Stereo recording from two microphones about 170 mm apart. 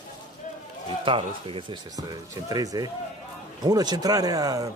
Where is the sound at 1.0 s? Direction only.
30° right (ahead or behind).